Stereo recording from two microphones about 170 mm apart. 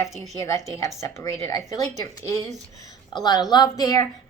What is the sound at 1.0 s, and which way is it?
Speech, 15° left (ahead or behind).